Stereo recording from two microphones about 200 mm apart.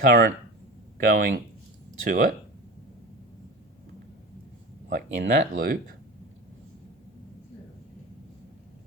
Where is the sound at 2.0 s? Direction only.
40° right (ahead or behind).